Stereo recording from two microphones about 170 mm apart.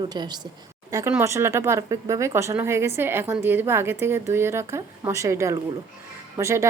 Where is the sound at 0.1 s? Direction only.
25° right (ahead or behind).